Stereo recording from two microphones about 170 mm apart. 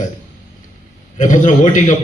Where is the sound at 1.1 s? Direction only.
50° left (ahead or behind).